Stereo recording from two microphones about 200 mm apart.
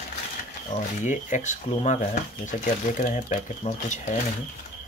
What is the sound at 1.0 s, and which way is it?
Speech, 35° left (ahead or behind).